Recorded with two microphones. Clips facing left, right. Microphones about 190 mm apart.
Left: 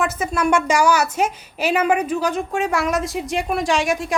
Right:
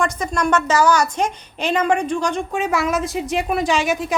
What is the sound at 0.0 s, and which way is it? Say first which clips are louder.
A woman's voice: even; 5° left (ahead or behind).